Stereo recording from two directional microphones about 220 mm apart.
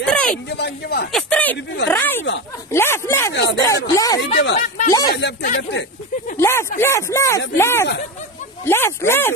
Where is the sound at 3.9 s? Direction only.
15° left (ahead or behind).